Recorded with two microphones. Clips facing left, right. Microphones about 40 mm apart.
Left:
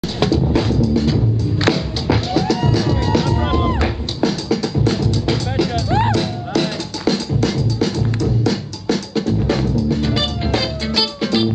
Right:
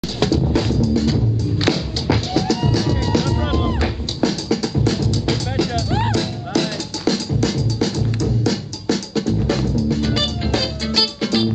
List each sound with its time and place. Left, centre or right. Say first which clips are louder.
0.2 s music: left 1 dB; centre